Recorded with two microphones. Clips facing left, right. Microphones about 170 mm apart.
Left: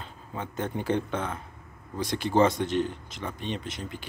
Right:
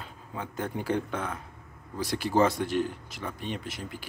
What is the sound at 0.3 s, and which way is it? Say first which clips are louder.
Speech: left 2 dB; 25° left (ahead or behind).